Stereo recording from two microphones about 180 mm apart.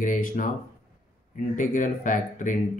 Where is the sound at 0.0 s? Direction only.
45° left (ahead or behind).